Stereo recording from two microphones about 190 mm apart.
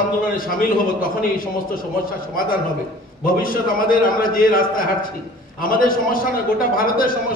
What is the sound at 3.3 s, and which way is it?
A man's voice, 50° left (ahead or behind).